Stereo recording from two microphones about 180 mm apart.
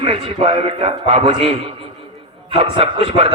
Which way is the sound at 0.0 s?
30° right (ahead or behind).